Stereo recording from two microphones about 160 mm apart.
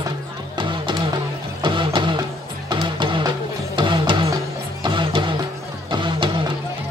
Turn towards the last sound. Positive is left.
turn(degrees=-30)  # may be behind; listen again after turning